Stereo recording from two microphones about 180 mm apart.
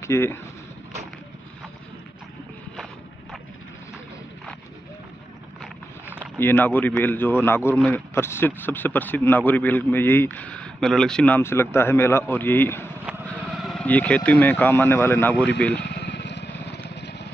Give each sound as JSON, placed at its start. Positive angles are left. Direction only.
{"t": 0.0, "sound": "speech", "side_deg": 15}
{"t": 6.1, "sound": "a man's voice", "side_deg": 10}
{"t": 13.4, "sound": "speech", "side_deg": 0}
{"t": 15.7, "sound": "a sound", "side_deg": 70}
{"t": 16.9, "sound": "vehicle", "side_deg": 70}